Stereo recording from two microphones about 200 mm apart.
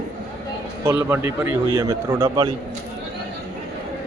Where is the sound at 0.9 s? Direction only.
10° right (ahead or behind).